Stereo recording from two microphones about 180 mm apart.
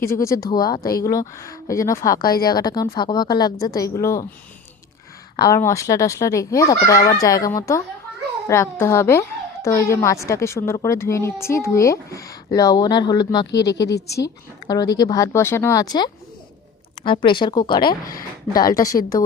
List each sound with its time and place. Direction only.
0.0 s speech: 15° left (ahead or behind)
5.4 s a woman's voice: 15° left (ahead or behind)